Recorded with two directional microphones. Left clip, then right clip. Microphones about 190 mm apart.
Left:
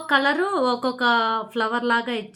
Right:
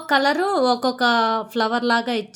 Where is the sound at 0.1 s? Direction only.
60° right (ahead or behind).